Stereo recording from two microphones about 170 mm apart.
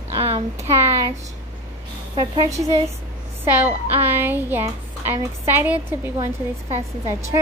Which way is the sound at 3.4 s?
10° right (ahead or behind).